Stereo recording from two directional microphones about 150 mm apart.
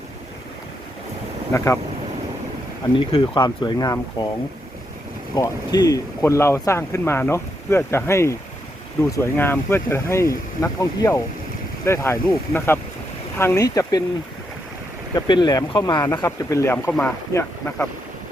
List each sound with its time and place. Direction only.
1.5 s speech: 20° left (ahead or behind)
2.9 s speech: 35° left (ahead or behind)
5.3 s speech: 25° left (ahead or behind)
15.1 s speech: 30° left (ahead or behind)